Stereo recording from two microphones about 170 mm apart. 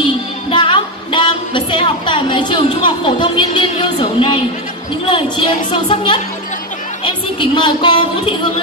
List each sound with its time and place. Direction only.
0.0 s music: 30° left (ahead or behind)
5.1 s speech: 30° left (ahead or behind)